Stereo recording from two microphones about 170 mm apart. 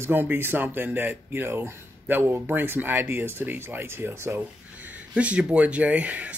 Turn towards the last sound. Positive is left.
turn(degrees=-10)  # may be behind; listen again after turning